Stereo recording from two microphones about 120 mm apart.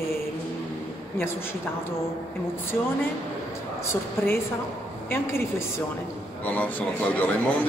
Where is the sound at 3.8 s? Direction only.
20° left (ahead or behind).